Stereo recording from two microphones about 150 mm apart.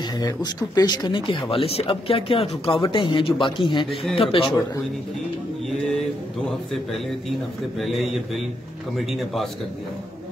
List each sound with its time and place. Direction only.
0.2 s speech: 25° left (ahead or behind)
6.7 s a man's voice: centre (ahead or behind)